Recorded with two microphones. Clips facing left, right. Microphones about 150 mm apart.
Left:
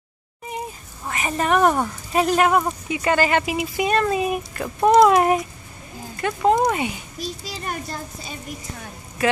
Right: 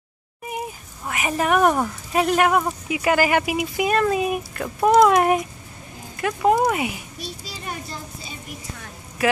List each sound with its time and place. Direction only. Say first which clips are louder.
0.5 s speech: right 1 dB; 10° right (ahead or behind)
7.2 s a child's voice: left 4 dB; 45° left (ahead or behind)
9.2 s speech: even; 5° right (ahead or behind)